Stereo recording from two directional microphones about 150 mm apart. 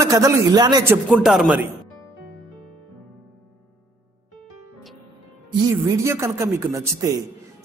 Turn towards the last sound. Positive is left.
turn(degrees=-20)  # may be behind; listen again after turning